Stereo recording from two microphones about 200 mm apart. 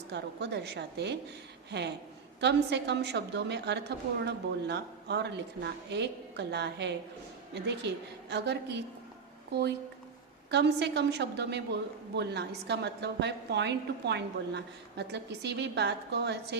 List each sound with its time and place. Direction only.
0.1 s a woman's voice: 60° right (ahead or behind)